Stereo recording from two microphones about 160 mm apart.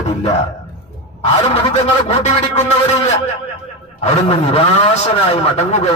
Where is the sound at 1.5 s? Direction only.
35° left (ahead or behind).